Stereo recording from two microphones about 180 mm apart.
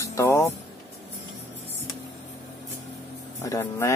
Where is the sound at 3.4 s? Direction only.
15° left (ahead or behind).